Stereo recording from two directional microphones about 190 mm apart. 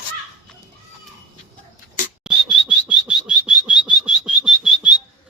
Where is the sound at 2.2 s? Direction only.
5° right (ahead or behind).